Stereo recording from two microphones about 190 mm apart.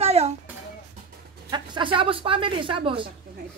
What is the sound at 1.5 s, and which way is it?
Speech, 25° right (ahead or behind).